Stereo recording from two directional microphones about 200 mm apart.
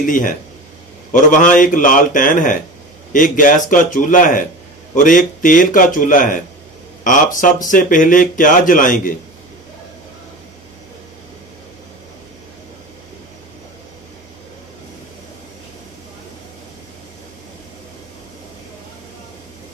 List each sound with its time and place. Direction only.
0.0 s a man's voice: 40° left (ahead or behind)